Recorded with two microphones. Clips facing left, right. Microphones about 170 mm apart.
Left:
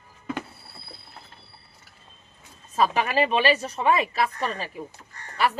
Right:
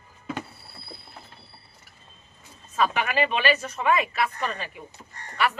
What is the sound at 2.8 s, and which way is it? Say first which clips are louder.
A woman's voice: left 2 dB; 35° left (ahead or behind).